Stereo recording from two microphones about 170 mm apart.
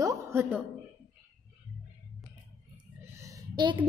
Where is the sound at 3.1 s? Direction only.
20° right (ahead or behind).